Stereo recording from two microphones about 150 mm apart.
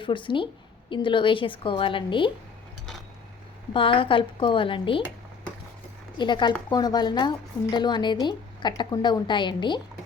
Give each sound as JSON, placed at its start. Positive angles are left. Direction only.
{"t": 0.0, "sound": "a woman's voice", "side_deg": 35}
{"t": 3.7, "sound": "a woman's voice", "side_deg": 35}
{"t": 6.1, "sound": "a woman's voice", "side_deg": 30}